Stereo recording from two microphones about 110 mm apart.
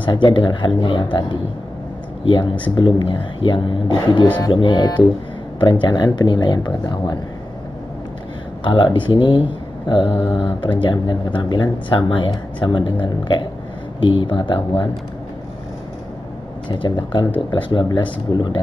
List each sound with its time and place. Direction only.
0.0 s speech: 45° left (ahead or behind)
2.2 s speech: 50° left (ahead or behind)
8.6 s speech: 45° left (ahead or behind)
16.6 s speech: 45° left (ahead or behind)